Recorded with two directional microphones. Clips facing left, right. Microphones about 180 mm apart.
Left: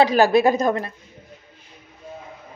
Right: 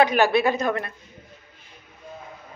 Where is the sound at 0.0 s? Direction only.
35° left (ahead or behind).